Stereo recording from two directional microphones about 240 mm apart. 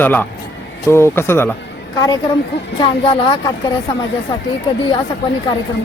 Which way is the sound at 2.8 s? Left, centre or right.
Left.